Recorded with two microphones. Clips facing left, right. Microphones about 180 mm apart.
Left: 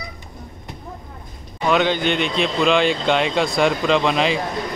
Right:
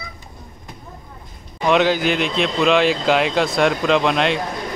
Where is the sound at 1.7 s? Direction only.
5° right (ahead or behind).